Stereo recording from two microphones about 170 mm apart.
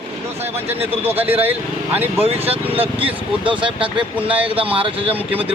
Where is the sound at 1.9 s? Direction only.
10° right (ahead or behind).